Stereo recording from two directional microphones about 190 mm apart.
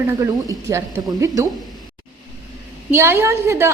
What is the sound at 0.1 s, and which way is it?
A woman's voice, 15° right (ahead or behind).